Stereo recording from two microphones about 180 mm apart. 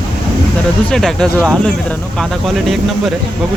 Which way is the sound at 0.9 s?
5° left (ahead or behind).